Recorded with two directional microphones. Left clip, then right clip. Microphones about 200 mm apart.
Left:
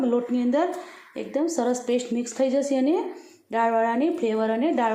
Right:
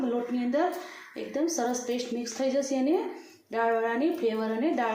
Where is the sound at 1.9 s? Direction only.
40° left (ahead or behind).